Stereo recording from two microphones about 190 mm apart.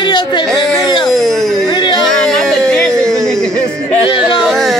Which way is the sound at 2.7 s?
5° left (ahead or behind).